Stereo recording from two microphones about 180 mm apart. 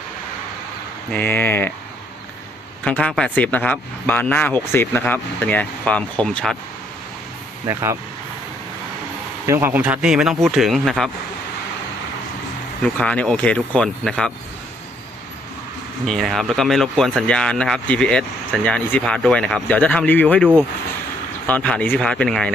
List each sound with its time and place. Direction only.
1.1 s speech: 10° left (ahead or behind)
2.8 s speech: 5° left (ahead or behind)
7.6 s speech: 15° right (ahead or behind)
9.5 s speech: 10° right (ahead or behind)
12.8 s speech: 5° left (ahead or behind)
16.0 s speech: centre (ahead or behind)